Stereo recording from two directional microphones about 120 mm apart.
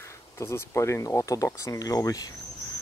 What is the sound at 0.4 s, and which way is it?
Speech, 25° left (ahead or behind).